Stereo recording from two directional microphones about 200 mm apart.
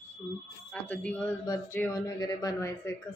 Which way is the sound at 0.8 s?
5° left (ahead or behind).